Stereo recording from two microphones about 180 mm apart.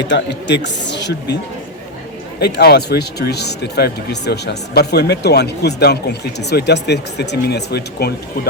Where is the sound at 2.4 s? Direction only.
65° left (ahead or behind).